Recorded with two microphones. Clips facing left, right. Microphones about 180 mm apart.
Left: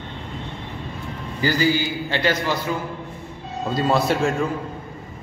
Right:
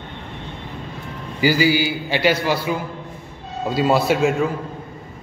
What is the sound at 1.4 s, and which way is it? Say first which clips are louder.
A man's voice: right 3 dB; 10° right (ahead or behind).